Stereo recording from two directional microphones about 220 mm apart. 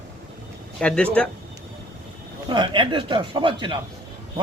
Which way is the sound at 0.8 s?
5° left (ahead or behind).